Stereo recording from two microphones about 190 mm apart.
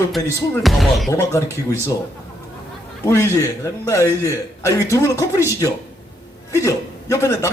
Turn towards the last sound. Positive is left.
turn(degrees=15)  # may be behind; listen again after turning